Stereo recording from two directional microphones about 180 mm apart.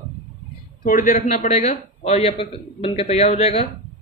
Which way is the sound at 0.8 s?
50° left (ahead or behind).